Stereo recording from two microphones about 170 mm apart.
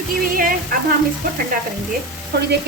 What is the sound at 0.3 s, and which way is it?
Speech, 55° right (ahead or behind).